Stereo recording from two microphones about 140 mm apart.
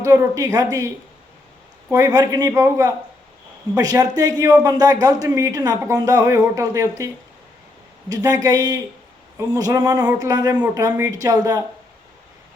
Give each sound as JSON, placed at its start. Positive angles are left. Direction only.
{"t": 0.0, "sound": "a man's voice", "side_deg": -25}
{"t": 8.1, "sound": "a man's voice", "side_deg": -25}